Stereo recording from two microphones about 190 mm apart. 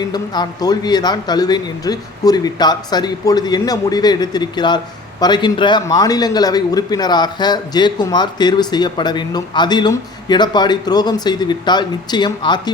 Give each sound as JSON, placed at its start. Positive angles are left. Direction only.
{"t": 0.0, "sound": "speech", "side_deg": 20}